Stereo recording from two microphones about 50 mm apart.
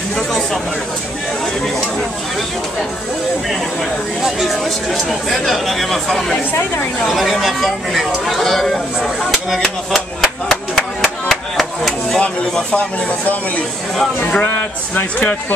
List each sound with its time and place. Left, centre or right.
4.2 s speech: centre
10.2 s a sound: centre
12.2 s speech: left
15.0 s speech: left